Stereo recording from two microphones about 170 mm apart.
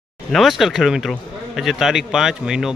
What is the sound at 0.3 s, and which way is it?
Speech, centre (ahead or behind).